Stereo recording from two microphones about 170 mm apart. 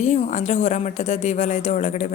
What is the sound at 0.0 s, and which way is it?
Speech, 45° left (ahead or behind).